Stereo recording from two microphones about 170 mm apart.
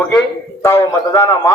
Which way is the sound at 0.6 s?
15° left (ahead or behind).